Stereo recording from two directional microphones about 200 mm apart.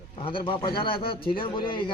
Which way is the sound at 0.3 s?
25° left (ahead or behind).